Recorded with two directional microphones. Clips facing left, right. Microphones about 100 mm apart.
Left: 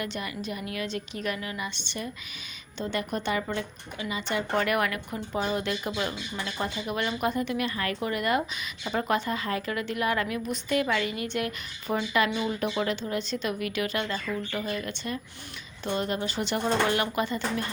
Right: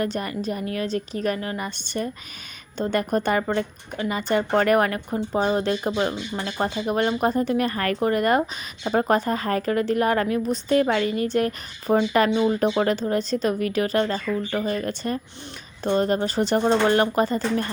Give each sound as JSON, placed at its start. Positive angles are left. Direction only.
{"t": 0.0, "sound": "a woman's voice", "side_deg": -40}